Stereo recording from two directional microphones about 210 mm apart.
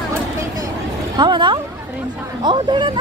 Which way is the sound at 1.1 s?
20° right (ahead or behind).